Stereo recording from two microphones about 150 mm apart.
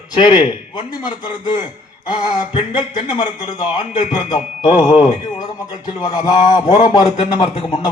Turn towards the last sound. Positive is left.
turn(degrees=30)  # may be behind; listen again after turning